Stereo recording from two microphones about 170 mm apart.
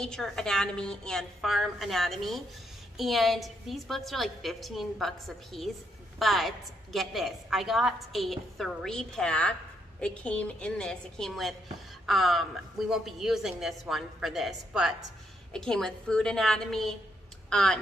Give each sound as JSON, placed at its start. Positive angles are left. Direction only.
{"t": 0.0, "sound": "a woman's voice", "side_deg": 5}